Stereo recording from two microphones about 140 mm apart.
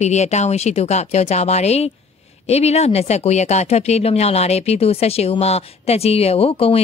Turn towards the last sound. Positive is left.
turn(degrees=45)  # may be behind; listen again after turning